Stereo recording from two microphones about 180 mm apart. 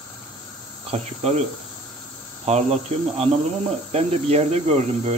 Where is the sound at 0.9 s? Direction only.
35° right (ahead or behind).